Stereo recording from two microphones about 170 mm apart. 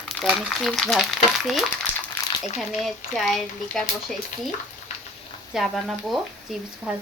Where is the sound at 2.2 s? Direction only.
10° left (ahead or behind).